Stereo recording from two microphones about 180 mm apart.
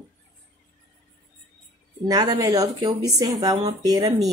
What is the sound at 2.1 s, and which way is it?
Speech, 20° right (ahead or behind).